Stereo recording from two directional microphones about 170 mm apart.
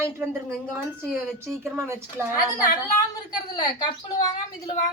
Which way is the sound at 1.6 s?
15° right (ahead or behind).